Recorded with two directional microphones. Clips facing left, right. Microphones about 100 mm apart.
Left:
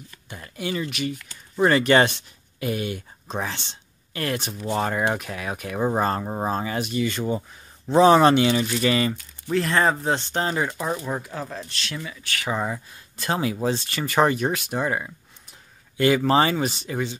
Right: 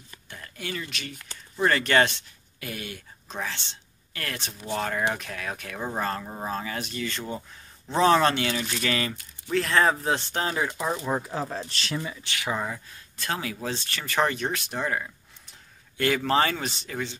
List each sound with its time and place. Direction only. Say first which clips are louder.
0.3 s speech: left 6 dB; 15° left (ahead or behind)
5.8 s speech: left 8 dB; 25° left (ahead or behind)
6.5 s speech: left 6 dB; 20° left (ahead or behind); by 10.7 s centre (ahead or behind)
11.2 s speech: right 2 dB; 25° right (ahead or behind)
12.5 s speech: left 4 dB; 20° left (ahead or behind)